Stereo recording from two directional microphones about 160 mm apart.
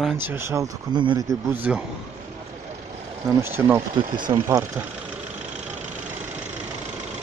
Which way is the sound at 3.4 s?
15° right (ahead or behind).